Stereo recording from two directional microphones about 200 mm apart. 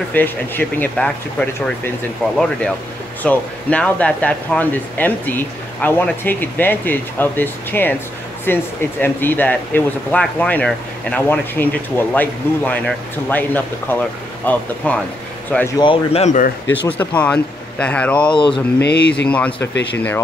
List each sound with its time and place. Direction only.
0.1 s speech: 10° left (ahead or behind)
15.8 s speech: 25° left (ahead or behind)
16.8 s speech: 10° left (ahead or behind)
18.3 s speech: 25° left (ahead or behind)
18.8 s speech: 55° left (ahead or behind)
19.2 s speech: 5° left (ahead or behind)